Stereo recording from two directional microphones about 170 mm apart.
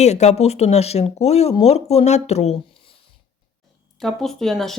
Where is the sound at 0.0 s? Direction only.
40° left (ahead or behind).